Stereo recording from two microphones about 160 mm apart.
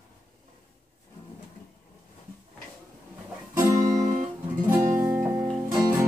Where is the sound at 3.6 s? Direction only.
20° right (ahead or behind).